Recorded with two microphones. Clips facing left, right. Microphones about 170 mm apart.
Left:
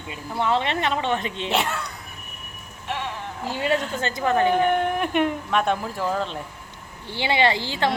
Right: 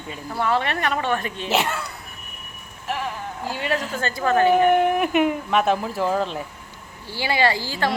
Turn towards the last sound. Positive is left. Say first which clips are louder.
# even
turn(degrees=20)  # may be behind; listen again after turning